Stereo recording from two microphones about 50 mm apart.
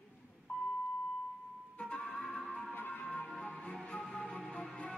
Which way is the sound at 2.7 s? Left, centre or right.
Left.